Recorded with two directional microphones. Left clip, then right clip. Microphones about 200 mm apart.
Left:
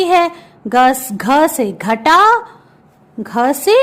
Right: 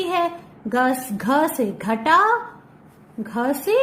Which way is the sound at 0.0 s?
30° left (ahead or behind).